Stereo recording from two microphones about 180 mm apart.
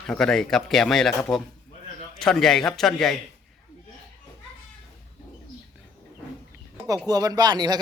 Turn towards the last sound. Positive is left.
turn(degrees=-25)  # may be behind; listen again after turning